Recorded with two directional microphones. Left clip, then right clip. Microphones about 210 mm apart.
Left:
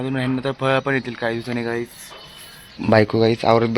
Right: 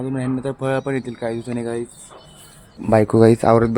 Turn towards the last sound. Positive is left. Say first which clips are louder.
# right 3 dB
turn(degrees=-30)  # may be behind; listen again after turning